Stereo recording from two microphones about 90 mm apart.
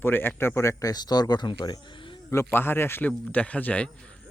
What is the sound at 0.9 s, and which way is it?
Speech, 50° left (ahead or behind).